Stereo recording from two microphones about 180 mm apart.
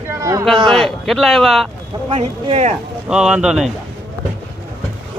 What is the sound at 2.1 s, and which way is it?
Speech, 35° right (ahead or behind).